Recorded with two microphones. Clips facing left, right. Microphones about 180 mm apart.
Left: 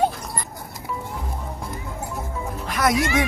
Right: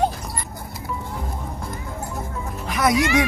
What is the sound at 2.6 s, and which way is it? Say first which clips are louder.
Speech: right 2 dB; centre (ahead or behind).